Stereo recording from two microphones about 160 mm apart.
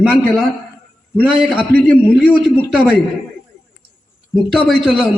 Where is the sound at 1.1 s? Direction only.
Centre (ahead or behind).